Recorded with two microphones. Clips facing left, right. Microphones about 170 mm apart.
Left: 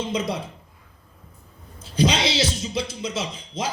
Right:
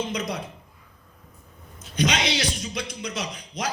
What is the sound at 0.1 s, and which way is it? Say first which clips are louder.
Speech: left 3 dB; 25° left (ahead or behind).